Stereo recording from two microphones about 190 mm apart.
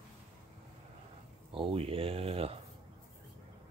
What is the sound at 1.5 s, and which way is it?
Speech, 30° right (ahead or behind).